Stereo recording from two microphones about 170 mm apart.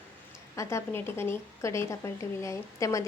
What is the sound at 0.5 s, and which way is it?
A woman's voice, 15° left (ahead or behind).